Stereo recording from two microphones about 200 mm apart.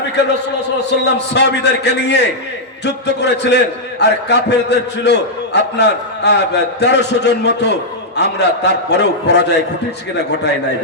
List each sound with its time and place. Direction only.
0.9 s a man's voice: 60° left (ahead or behind)